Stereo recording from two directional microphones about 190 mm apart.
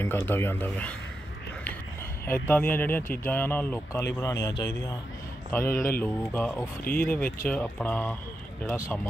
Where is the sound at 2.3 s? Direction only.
10° left (ahead or behind).